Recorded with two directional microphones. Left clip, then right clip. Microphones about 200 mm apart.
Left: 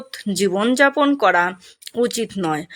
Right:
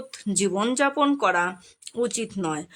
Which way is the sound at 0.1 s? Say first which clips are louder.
Left 6 dB; 15° left (ahead or behind).